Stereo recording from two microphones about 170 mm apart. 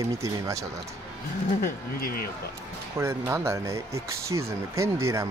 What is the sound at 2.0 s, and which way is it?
Speech, 60° left (ahead or behind).